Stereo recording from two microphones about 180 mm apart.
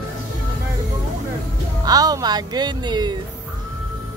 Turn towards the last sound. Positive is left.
turn(degrees=-25)  # may be behind; listen again after turning